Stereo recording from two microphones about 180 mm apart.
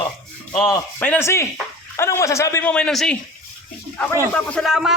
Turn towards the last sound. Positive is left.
turn(degrees=0)  # may be behind; listen again after turning